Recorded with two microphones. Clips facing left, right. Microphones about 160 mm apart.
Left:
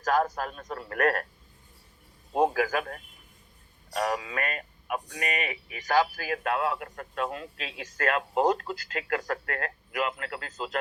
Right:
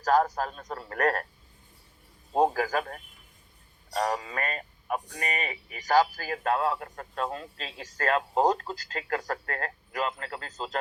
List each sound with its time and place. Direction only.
0.0 s speech: 30° right (ahead or behind)
2.5 s speech: 35° right (ahead or behind)